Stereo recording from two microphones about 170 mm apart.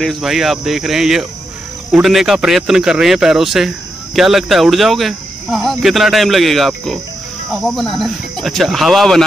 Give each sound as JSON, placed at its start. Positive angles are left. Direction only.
{"t": 0.0, "sound": "speech", "side_deg": 0}